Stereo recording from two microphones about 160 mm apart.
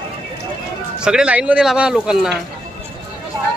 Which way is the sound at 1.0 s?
5° right (ahead or behind).